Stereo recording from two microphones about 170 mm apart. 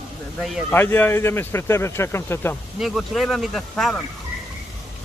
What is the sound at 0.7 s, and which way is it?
Speech, 10° left (ahead or behind).